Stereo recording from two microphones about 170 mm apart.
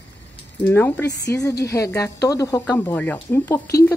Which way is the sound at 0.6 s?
10° left (ahead or behind).